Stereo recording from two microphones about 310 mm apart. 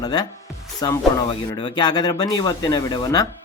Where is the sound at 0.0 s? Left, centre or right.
Centre.